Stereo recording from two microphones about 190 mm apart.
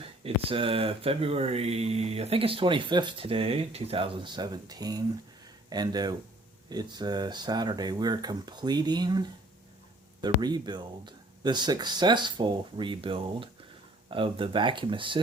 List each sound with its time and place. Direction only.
0.0 s speech: 30° right (ahead or behind)